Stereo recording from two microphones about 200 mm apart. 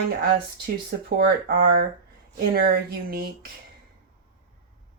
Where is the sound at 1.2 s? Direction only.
50° right (ahead or behind).